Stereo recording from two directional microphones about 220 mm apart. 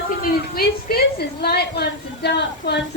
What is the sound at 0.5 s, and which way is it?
A woman's voice, 45° left (ahead or behind).